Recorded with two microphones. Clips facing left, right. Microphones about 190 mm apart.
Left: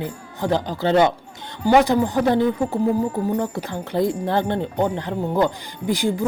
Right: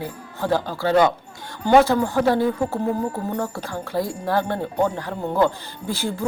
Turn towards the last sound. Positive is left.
turn(degrees=15)  # may be behind; listen again after turning